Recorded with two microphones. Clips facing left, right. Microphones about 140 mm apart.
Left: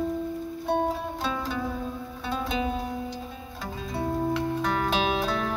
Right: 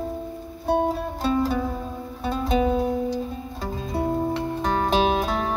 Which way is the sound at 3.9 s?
40° right (ahead or behind).